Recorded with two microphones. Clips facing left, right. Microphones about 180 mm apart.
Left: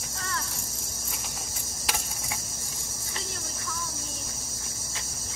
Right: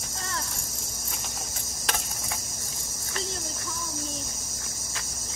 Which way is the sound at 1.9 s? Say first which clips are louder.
Right 2 dB; 10° left (ahead or behind).